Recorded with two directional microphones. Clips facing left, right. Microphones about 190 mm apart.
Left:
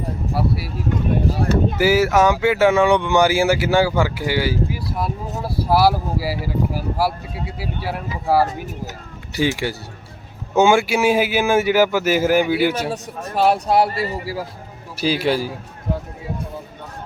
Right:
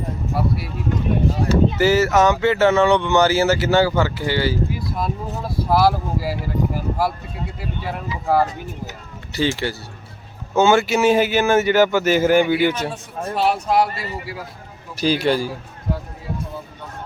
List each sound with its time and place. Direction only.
0.3 s a man's voice: 5° left (ahead or behind)
1.4 s speech: 50° left (ahead or behind)
1.8 s speech: 10° left (ahead or behind)
9.3 s speech: 10° left (ahead or behind)
12.9 s speech: 35° left (ahead or behind)
14.9 s a man's voice: 5° left (ahead or behind)